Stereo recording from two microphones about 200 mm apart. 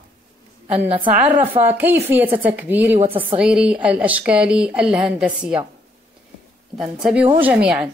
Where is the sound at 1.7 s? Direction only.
10° right (ahead or behind).